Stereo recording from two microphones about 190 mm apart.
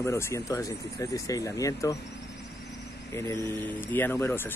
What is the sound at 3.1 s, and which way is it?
Speech, 15° left (ahead or behind).